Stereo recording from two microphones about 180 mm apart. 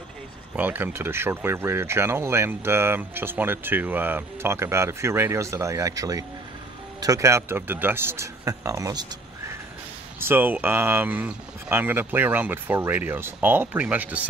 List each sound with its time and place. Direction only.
0.6 s speech: 10° right (ahead or behind)
10.2 s speech: 10° right (ahead or behind)